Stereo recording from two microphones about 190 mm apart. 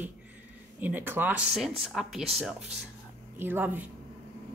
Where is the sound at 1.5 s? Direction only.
Centre (ahead or behind).